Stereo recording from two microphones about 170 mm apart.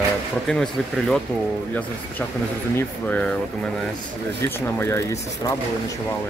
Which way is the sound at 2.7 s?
10° left (ahead or behind).